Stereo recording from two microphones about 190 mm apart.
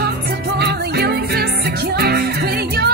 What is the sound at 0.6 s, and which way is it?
Music, 55° right (ahead or behind).